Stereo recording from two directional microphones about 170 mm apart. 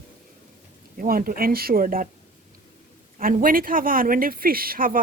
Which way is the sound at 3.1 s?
55° right (ahead or behind).